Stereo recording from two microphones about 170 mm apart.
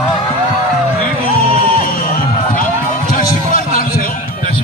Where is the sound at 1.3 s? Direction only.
60° left (ahead or behind).